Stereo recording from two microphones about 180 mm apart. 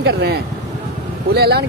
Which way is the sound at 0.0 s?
65° right (ahead or behind).